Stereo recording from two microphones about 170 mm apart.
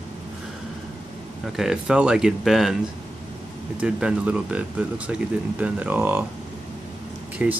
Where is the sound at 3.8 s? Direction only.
5° right (ahead or behind).